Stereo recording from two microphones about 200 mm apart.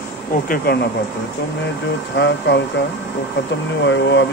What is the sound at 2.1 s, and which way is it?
Speech, 60° left (ahead or behind).